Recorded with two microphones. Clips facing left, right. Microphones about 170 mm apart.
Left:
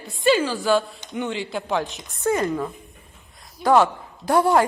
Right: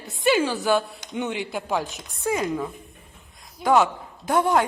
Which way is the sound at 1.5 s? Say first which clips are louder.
Left 2 dB; 5° right (ahead or behind).